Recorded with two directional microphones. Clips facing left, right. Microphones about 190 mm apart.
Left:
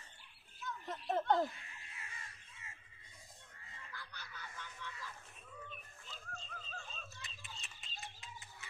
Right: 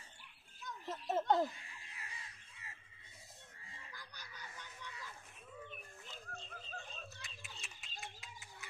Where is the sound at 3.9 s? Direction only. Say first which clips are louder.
Left 5 dB; 15° right (ahead or behind).